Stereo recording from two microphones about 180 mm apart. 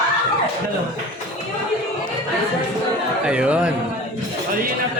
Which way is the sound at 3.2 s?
5° right (ahead or behind).